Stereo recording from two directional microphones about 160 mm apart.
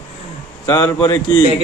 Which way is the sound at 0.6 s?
25° left (ahead or behind).